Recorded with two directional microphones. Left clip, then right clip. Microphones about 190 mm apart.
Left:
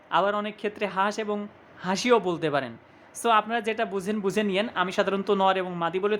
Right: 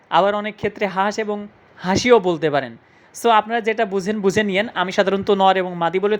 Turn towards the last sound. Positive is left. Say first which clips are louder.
# right 7 dB
turn(degrees=-20)  # may be behind; listen again after turning